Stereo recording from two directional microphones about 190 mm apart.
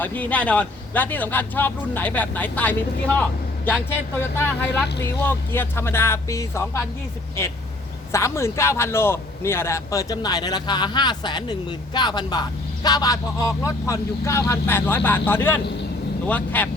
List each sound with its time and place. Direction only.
0.0 s speech: 10° left (ahead or behind)
8.1 s speech: 15° left (ahead or behind)